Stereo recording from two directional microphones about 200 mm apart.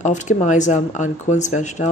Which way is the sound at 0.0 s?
35° left (ahead or behind).